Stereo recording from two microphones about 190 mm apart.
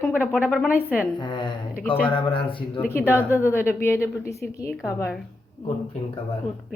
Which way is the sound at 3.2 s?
15° left (ahead or behind).